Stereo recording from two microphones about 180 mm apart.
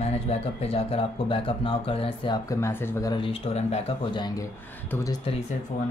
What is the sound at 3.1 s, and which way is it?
Speech, 30° left (ahead or behind).